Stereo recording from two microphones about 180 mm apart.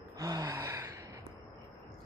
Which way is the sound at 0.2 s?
20° right (ahead or behind).